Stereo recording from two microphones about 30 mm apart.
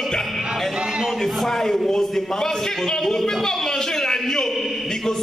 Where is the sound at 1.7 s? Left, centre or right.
Centre.